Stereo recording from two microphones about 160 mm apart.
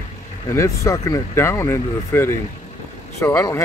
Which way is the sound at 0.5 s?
20° left (ahead or behind).